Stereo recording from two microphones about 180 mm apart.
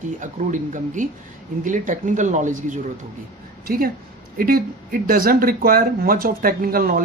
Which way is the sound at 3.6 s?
55° right (ahead or behind).